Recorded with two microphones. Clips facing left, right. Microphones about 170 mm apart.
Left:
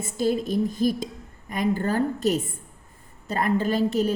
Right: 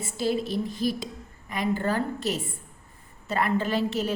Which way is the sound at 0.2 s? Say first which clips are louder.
Left 3 dB; 45° left (ahead or behind).